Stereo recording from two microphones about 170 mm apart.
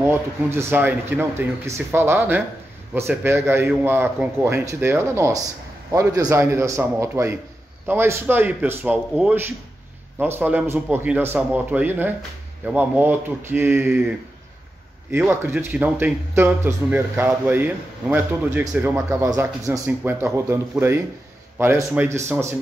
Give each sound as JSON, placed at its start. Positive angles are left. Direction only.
{"t": 0.0, "sound": "speech", "side_deg": -15}